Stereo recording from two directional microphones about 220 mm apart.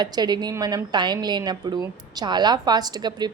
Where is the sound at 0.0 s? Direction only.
20° right (ahead or behind).